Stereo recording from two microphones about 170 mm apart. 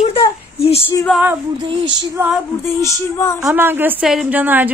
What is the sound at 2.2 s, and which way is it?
Speech, 15° right (ahead or behind).